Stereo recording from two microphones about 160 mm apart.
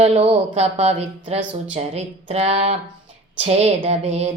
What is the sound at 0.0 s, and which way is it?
Speech, 40° right (ahead or behind).